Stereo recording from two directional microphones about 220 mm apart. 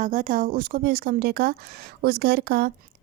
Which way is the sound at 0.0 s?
35° right (ahead or behind).